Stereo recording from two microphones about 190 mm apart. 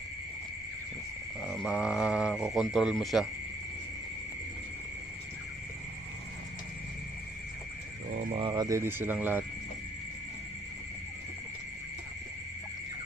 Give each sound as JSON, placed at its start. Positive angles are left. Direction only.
{"t": 1.5, "sound": "speech", "side_deg": 0}
{"t": 8.1, "sound": "speech", "side_deg": -35}